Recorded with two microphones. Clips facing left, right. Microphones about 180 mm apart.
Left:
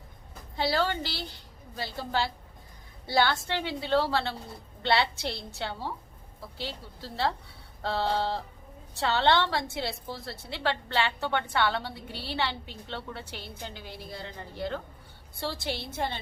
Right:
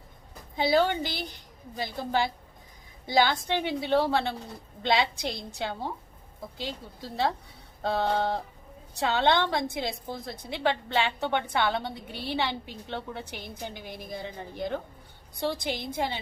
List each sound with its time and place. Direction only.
0.5 s a woman's voice: 15° right (ahead or behind)